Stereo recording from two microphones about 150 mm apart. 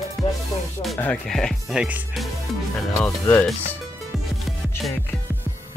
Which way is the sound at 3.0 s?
10° left (ahead or behind).